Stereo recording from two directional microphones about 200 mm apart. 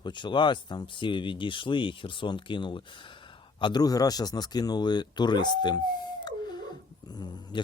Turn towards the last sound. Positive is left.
turn(degrees=20)  # may be behind; listen again after turning